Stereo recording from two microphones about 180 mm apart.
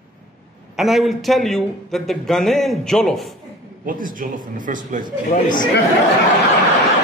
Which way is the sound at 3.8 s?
50° right (ahead or behind).